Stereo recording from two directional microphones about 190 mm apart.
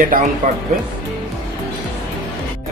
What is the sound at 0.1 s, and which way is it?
Speech, 45° right (ahead or behind).